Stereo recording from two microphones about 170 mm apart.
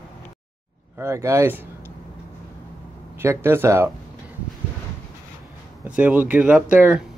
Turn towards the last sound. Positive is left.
turn(degrees=-10)  # may be behind; listen again after turning